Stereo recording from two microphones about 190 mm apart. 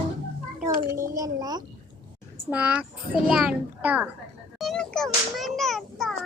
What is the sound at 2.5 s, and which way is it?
A child's voice, 5° right (ahead or behind).